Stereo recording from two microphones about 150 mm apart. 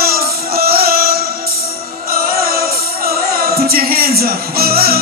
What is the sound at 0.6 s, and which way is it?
Music, 90° right.